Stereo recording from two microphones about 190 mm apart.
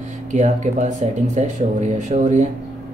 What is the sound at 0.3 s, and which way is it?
Speech, 40° right (ahead or behind).